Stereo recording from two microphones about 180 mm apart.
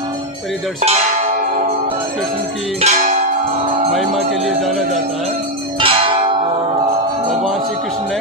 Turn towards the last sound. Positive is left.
turn(degrees=-30)  # may be behind; listen again after turning